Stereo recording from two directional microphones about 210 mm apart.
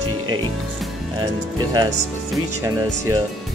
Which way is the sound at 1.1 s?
20° right (ahead or behind).